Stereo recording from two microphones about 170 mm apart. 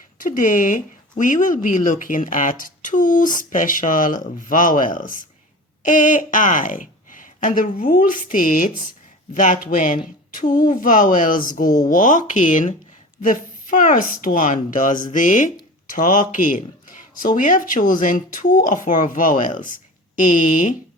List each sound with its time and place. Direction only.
0.2 s speech: 50° left (ahead or behind)